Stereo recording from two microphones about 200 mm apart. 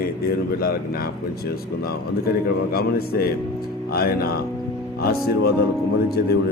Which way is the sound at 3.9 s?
50° left (ahead or behind).